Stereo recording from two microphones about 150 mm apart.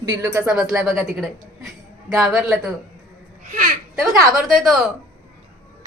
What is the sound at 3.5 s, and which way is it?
Speech, 60° right (ahead or behind).